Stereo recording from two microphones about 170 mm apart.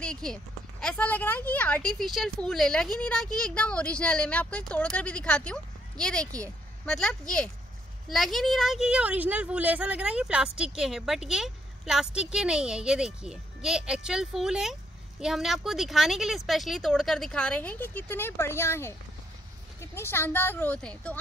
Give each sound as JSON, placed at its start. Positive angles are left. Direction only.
{"t": 0.0, "sound": "a woman's voice", "side_deg": 5}